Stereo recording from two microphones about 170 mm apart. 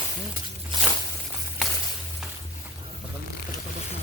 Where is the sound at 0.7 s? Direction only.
30° right (ahead or behind).